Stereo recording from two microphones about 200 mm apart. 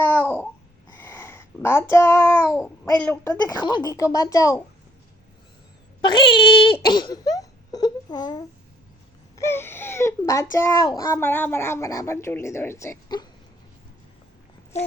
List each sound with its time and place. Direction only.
0.9 s a child's voice: 10° left (ahead or behind)
6.0 s a child's voice: 25° left (ahead or behind)